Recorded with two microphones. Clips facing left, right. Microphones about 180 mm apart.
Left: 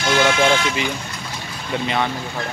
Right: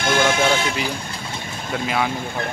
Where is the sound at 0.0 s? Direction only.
50° right (ahead or behind).